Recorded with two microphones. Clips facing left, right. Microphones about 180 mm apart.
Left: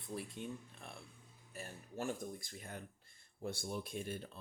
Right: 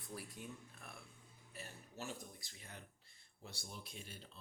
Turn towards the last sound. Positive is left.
turn(degrees=55)  # may be behind; listen again after turning